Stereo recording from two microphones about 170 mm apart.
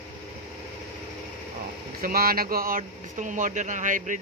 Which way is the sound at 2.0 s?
60° right (ahead or behind).